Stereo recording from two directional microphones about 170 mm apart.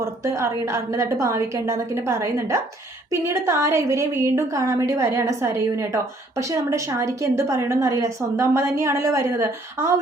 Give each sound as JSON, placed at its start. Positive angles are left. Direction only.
{"t": 0.0, "sound": "a woman's voice", "side_deg": -15}